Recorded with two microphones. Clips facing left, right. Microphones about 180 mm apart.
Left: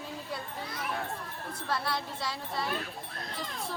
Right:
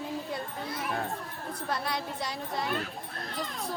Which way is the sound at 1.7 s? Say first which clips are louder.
Even; 20° right (ahead or behind).